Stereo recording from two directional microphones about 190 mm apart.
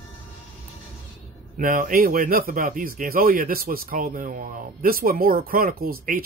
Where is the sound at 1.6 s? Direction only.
45° right (ahead or behind).